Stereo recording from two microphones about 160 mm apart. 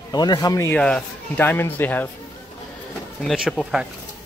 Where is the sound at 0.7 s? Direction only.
5° left (ahead or behind).